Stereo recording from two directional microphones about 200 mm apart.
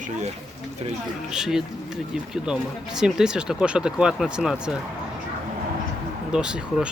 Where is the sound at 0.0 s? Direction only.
40° right (ahead or behind).